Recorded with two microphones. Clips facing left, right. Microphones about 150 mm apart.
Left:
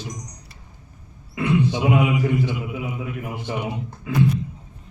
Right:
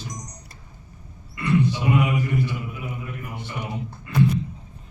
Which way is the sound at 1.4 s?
90° left.